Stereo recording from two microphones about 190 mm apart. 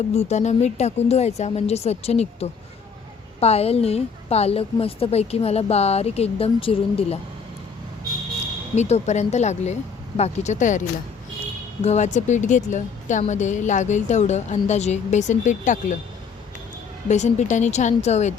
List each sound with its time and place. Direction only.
0.1 s a woman's voice: 35° left (ahead or behind)
8.7 s a woman's voice: 35° left (ahead or behind)
17.1 s a woman's voice: 40° left (ahead or behind)